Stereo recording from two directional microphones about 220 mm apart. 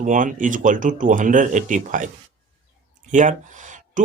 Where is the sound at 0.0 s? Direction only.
35° right (ahead or behind).